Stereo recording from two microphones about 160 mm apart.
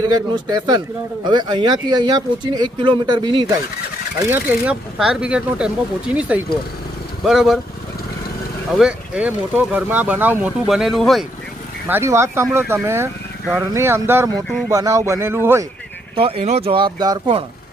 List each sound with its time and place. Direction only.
1.2 s speech: 30° right (ahead or behind)
4.3 s speech: 10° right (ahead or behind)
8.8 s speech: 5° right (ahead or behind)
11.9 s speech: 15° right (ahead or behind)
16.1 s speech: 35° right (ahead or behind)